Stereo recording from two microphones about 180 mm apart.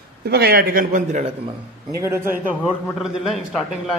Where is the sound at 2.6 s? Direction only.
Centre (ahead or behind).